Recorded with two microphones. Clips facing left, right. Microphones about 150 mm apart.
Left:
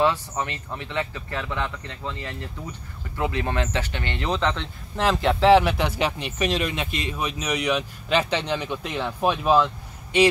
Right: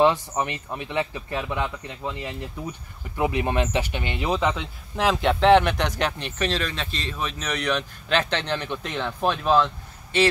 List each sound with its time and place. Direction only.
0.0 s speech: 15° right (ahead or behind); by 9.7 s 10° left (ahead or behind)